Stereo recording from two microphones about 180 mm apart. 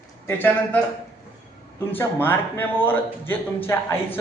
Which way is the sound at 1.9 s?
10° left (ahead or behind).